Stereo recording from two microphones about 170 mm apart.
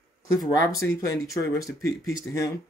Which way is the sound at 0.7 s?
20° left (ahead or behind).